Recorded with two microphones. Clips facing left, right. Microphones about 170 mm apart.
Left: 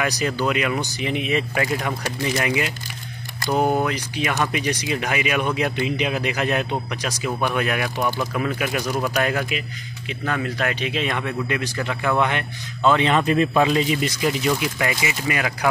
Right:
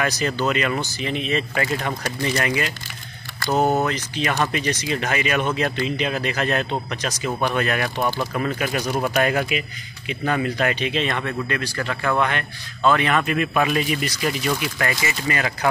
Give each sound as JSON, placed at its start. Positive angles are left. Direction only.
{"t": 0.0, "sound": "speech", "side_deg": 10}
{"t": 3.4, "sound": "speech", "side_deg": -20}
{"t": 3.8, "sound": "speech", "side_deg": 10}